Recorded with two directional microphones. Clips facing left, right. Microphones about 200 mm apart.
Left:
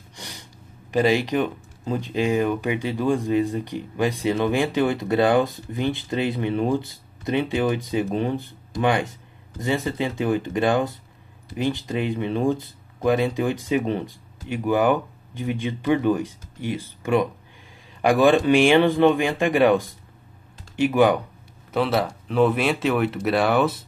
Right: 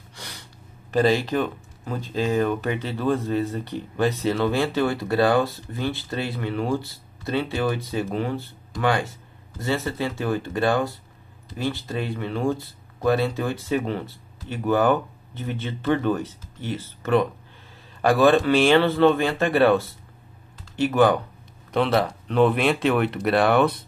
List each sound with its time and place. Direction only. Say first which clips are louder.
0.1 s gasp: left 1 dB; 15° left (ahead or behind)
0.9 s speech: even; 15° left (ahead or behind)